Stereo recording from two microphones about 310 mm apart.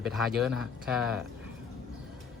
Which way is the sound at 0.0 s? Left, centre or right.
Centre.